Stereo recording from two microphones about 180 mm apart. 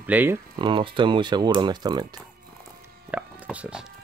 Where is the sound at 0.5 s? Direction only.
25° right (ahead or behind).